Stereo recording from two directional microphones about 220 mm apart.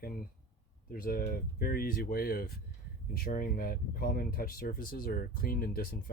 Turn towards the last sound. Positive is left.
turn(degrees=40)  # may be behind; listen again after turning